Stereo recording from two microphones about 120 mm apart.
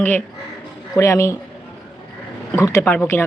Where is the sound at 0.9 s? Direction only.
25° left (ahead or behind).